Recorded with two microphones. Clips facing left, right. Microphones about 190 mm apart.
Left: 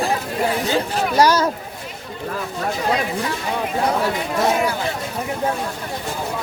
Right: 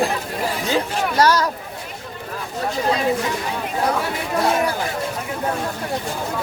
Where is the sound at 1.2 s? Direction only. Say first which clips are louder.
Left 1 dB; 15° left (ahead or behind).